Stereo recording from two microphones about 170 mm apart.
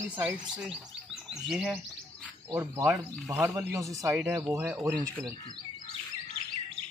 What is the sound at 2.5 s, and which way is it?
Speech, 15° right (ahead or behind).